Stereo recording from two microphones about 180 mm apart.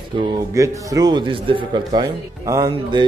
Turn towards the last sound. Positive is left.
turn(degrees=-20)  # may be behind; listen again after turning